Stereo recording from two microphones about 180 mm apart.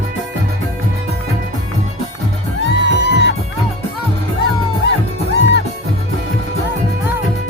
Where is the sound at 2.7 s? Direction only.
65° left (ahead or behind).